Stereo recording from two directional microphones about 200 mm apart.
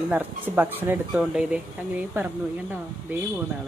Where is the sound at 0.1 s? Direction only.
10° right (ahead or behind).